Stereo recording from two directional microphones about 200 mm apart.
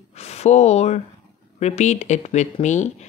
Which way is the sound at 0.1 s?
30° left (ahead or behind).